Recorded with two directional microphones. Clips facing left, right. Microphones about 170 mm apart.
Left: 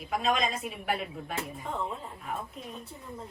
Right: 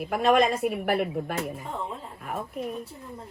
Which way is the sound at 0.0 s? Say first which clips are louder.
Right 7 dB; 65° right (ahead or behind).